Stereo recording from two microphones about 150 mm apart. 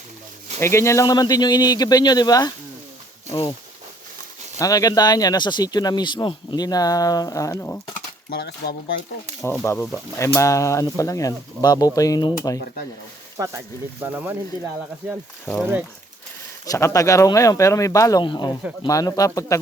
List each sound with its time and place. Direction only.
0.6 s speech: 20° left (ahead or behind)
4.5 s speech: 25° left (ahead or behind)
8.3 s speech: 90° left
9.6 s speech: 20° left (ahead or behind)
13.3 s speech: 20° right (ahead or behind)
16.6 s speech: 20° left (ahead or behind)